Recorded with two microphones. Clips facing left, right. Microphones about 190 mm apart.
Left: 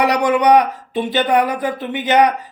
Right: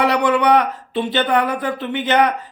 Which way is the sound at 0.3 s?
15° left (ahead or behind).